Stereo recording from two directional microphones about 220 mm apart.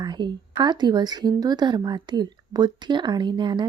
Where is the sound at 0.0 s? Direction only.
20° right (ahead or behind).